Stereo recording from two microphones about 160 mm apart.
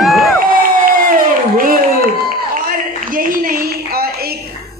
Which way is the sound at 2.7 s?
60° right (ahead or behind).